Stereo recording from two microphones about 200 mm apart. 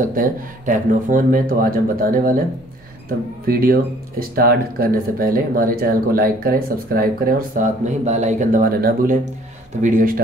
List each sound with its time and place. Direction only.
0.0 s speech: 40° right (ahead or behind)
3.4 s speech: 45° right (ahead or behind)